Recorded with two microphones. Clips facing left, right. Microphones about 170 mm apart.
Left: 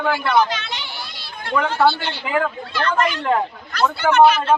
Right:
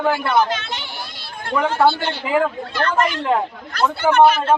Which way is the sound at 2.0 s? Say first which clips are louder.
Right 4 dB; 50° right (ahead or behind).